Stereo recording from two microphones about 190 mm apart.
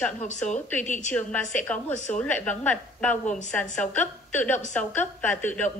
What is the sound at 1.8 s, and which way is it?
Speech, 40° left (ahead or behind).